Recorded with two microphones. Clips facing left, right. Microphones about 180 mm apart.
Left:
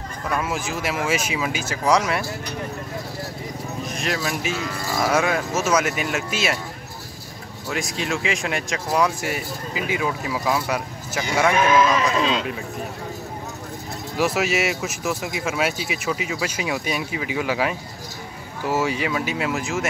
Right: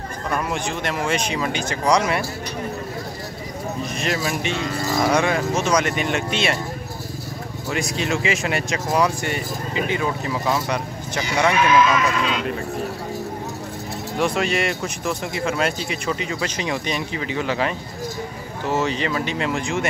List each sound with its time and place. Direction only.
0.3 s speech: 5° left (ahead or behind)
3.9 s speech: centre (ahead or behind)
7.7 s speech: centre (ahead or behind)
11.5 s speech: 45° left (ahead or behind); by 12.4 s 30° left (ahead or behind)
14.1 s speech: 5° left (ahead or behind)